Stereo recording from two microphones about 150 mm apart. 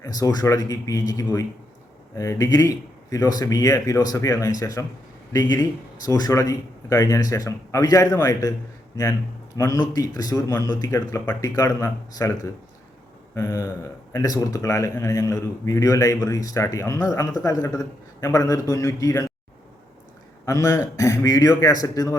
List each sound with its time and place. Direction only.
0.0 s a man's voice: 25° left (ahead or behind)
9.5 s a man's voice: 20° left (ahead or behind)
20.4 s a man's voice: 20° left (ahead or behind)